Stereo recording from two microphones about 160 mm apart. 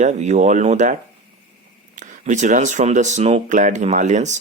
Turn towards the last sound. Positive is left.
turn(degrees=-50)  # may be behind; listen again after turning